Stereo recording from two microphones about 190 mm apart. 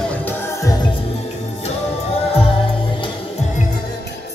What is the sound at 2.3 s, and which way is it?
Music, 30° left (ahead or behind).